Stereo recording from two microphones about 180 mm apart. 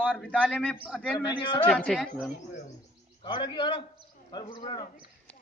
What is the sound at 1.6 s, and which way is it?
Speech, 5° left (ahead or behind).